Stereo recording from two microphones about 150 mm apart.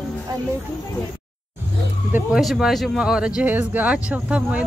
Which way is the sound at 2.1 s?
15° right (ahead or behind).